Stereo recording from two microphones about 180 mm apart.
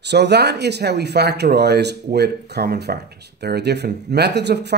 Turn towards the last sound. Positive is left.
turn(degrees=-70)  # may be behind; listen again after turning